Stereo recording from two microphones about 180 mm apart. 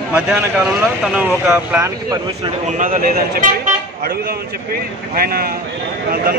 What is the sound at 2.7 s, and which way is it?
Speech, 50° right (ahead or behind).